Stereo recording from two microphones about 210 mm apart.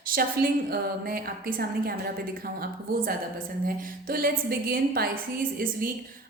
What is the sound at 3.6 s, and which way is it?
A woman's voice, 45° right (ahead or behind).